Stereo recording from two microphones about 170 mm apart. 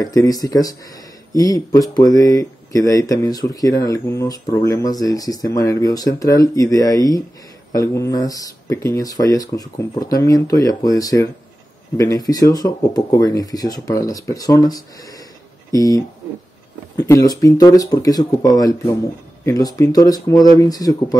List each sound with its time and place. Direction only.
0.0 s speech: 20° left (ahead or behind)